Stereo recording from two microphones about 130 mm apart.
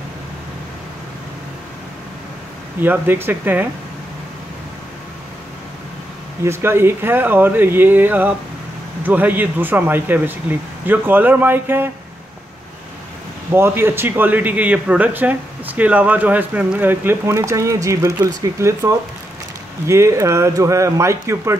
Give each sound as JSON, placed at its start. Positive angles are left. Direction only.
{"t": 2.8, "sound": "speech", "side_deg": -15}
{"t": 6.4, "sound": "speech", "side_deg": -20}
{"t": 13.5, "sound": "speech", "side_deg": -20}